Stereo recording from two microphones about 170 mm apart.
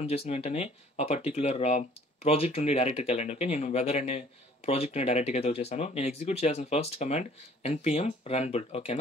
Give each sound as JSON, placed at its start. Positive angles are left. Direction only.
{"t": 0.0, "sound": "speech", "side_deg": 35}